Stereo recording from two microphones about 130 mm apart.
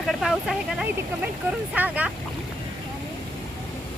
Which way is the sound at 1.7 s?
10° right (ahead or behind).